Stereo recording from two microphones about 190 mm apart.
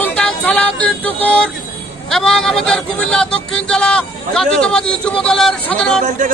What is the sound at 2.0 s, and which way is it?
Speech, centre (ahead or behind).